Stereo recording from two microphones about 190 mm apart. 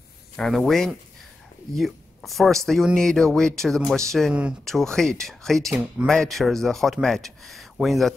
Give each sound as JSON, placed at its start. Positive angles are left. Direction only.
{"t": 0.4, "sound": "speech", "side_deg": 0}